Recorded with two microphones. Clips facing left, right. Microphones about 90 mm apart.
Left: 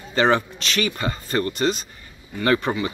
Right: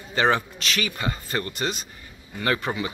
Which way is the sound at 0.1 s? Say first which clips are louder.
Left 3 dB; 5° right (ahead or behind).